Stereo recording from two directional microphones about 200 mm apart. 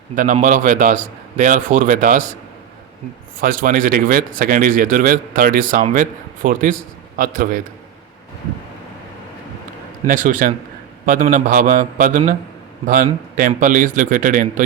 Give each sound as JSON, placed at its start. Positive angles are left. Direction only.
{"t": 0.2, "sound": "a man's voice", "side_deg": -40}
{"t": 3.4, "sound": "a man's voice", "side_deg": -45}
{"t": 10.1, "sound": "a man's voice", "side_deg": -40}